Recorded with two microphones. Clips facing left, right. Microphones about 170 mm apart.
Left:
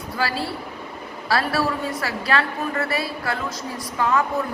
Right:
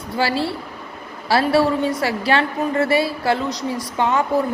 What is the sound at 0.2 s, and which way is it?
A woman's voice, 25° right (ahead or behind).